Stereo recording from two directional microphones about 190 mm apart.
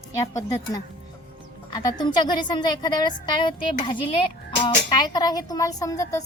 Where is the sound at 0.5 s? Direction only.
20° left (ahead or behind).